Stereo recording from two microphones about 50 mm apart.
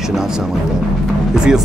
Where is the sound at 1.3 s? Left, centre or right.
Centre.